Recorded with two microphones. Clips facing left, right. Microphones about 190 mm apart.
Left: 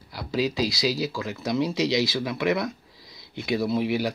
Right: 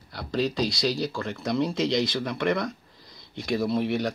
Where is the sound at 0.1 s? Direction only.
5° left (ahead or behind).